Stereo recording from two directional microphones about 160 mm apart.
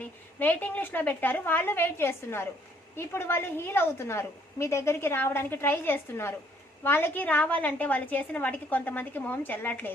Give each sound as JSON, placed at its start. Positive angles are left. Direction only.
{"t": 0.0, "sound": "a woman's voice", "side_deg": 10}